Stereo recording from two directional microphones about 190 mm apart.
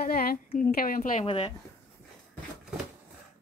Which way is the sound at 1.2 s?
30° left (ahead or behind).